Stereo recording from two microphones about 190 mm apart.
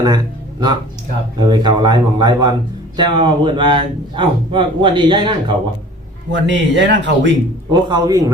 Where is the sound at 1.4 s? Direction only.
20° right (ahead or behind).